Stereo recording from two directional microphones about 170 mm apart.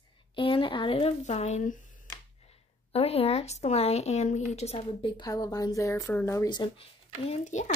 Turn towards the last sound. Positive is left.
turn(degrees=45)  # may be behind; listen again after turning